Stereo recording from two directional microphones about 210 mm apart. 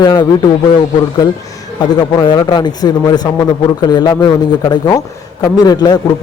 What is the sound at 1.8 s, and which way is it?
A man's voice, 20° left (ahead or behind).